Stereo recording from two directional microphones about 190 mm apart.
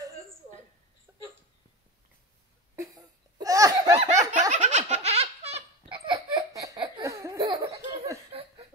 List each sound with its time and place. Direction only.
3.3 s laughter: 20° right (ahead or behind)
4.3 s laughter: 40° right (ahead or behind); by 8.2 s 15° right (ahead or behind)
8.3 s a sound: 30° right (ahead or behind)